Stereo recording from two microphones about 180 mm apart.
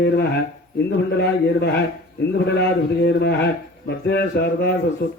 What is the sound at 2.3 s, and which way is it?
A man's voice, 65° left (ahead or behind).